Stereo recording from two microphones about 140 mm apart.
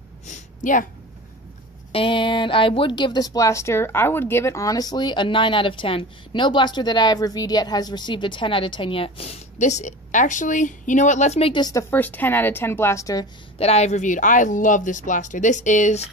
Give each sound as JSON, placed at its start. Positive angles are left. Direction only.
{"t": 0.3, "sound": "a sound", "side_deg": 70}
{"t": 1.9, "sound": "speech", "side_deg": 40}
{"t": 11.9, "sound": "speech", "side_deg": 15}
{"t": 13.6, "sound": "speech", "side_deg": 50}